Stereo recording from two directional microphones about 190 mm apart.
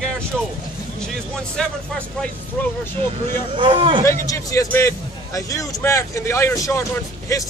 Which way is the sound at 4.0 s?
15° left (ahead or behind).